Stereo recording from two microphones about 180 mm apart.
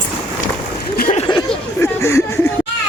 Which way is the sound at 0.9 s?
55° left (ahead or behind).